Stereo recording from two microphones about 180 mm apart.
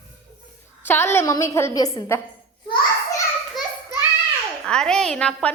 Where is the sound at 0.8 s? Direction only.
15° left (ahead or behind).